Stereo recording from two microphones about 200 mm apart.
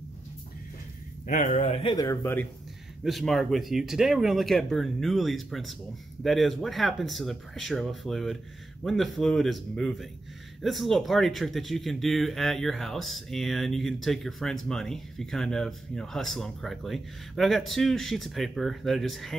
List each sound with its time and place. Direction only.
1.2 s speech: 40° left (ahead or behind); by 2.4 s 15° left (ahead or behind)
3.0 s speech: centre (ahead or behind)